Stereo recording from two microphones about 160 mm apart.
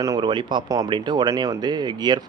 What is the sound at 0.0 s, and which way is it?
Speech, 25° right (ahead or behind).